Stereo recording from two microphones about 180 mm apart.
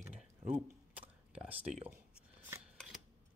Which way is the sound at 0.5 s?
10° right (ahead or behind).